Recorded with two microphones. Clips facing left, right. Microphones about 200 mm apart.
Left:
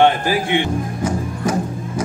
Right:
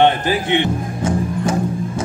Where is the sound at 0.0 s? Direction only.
20° right (ahead or behind).